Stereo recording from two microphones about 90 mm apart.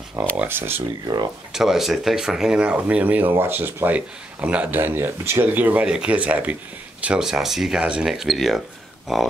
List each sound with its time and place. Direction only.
0.2 s speech: 20° right (ahead or behind)
1.0 s speech: 50° right (ahead or behind)
1.5 s speech: 5° right (ahead or behind)